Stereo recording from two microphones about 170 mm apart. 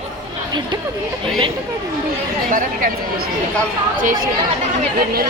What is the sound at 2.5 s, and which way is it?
Speech, 50° right (ahead or behind).